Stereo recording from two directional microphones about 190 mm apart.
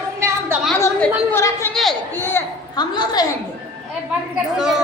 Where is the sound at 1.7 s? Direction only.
Centre (ahead or behind).